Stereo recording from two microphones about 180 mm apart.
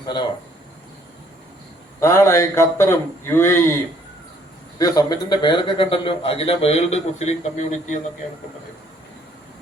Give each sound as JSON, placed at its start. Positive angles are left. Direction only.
{"t": 0.0, "sound": "speech", "side_deg": 25}
{"t": 2.0, "sound": "speech", "side_deg": 15}
{"t": 4.8, "sound": "speech", "side_deg": 20}